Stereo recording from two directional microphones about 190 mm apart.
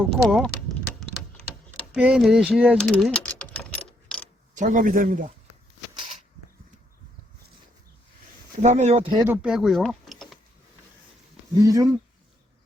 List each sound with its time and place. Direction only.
0.0 s speech: centre (ahead or behind)
0.9 s a sound: centre (ahead or behind)
4.5 s a man's voice: 40° right (ahead or behind)
8.6 s speech: 35° right (ahead or behind)
9.2 s speech: 10° right (ahead or behind)
11.6 s speech: 15° right (ahead or behind)